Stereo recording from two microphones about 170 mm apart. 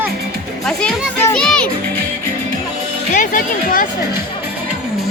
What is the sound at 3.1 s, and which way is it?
Speech, 50° left (ahead or behind).